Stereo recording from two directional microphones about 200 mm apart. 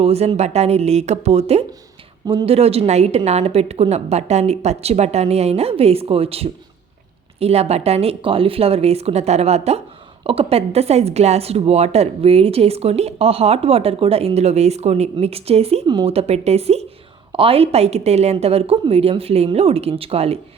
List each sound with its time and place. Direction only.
0.0 s a woman's voice: 30° right (ahead or behind)